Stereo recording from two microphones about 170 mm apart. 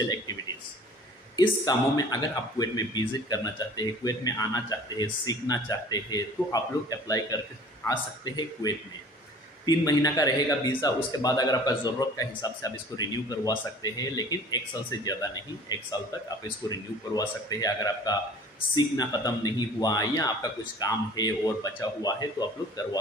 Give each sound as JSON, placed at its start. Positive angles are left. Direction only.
{"t": 1.3, "sound": "speech", "side_deg": 25}